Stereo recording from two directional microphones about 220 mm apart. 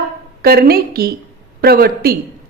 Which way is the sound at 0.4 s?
45° right (ahead or behind).